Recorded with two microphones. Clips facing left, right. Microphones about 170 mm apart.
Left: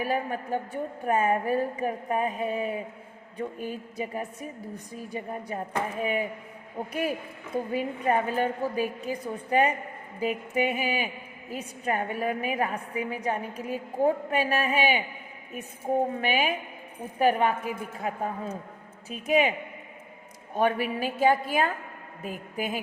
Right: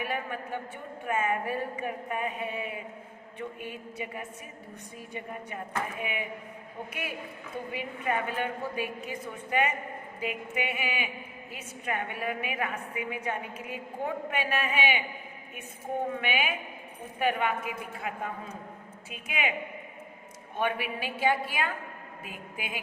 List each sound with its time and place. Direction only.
0.0 s a woman's voice: 40° left (ahead or behind)
7.5 s a woman's voice: 40° left (ahead or behind)
16.2 s a woman's voice: 40° left (ahead or behind)
20.6 s a woman's voice: 40° left (ahead or behind)